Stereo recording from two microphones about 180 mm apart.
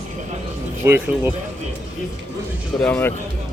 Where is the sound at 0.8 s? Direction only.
10° right (ahead or behind).